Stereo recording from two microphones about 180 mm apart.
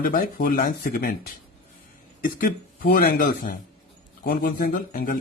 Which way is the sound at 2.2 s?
50° left (ahead or behind).